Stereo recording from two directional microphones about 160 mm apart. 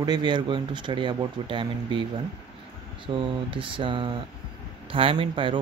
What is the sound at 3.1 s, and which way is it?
Speech, 30° right (ahead or behind).